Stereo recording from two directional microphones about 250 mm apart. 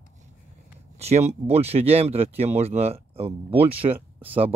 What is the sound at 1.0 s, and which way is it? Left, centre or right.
Speech, right.